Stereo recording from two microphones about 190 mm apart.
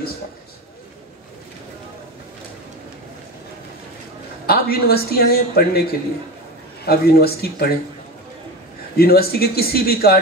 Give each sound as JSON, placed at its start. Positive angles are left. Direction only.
{"t": 4.5, "sound": "a man's voice", "side_deg": 55}
{"t": 6.9, "sound": "a man's voice", "side_deg": 55}
{"t": 8.9, "sound": "speech", "side_deg": 55}